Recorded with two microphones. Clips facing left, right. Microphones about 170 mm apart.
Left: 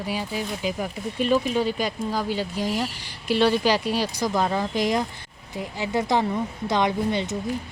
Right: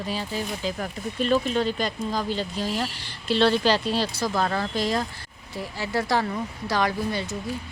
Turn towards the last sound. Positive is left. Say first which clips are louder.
# left 3 dB
turn(degrees=20)  # may be behind; listen again after turning